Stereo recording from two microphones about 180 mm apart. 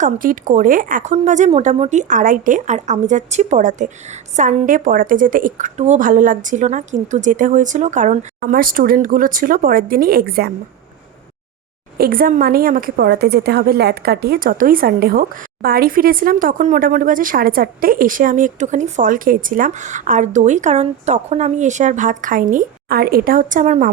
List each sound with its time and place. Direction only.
0.0 s speech: 45° right (ahead or behind)
11.9 s speech: 55° right (ahead or behind)